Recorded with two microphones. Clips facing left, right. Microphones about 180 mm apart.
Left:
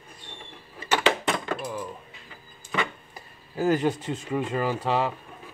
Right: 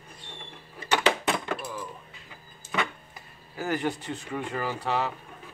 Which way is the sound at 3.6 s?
20° left (ahead or behind).